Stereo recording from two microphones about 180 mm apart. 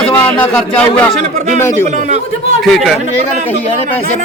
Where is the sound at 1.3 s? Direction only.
45° right (ahead or behind).